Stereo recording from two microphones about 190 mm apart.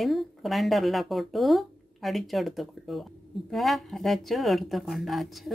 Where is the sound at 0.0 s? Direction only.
Centre (ahead or behind).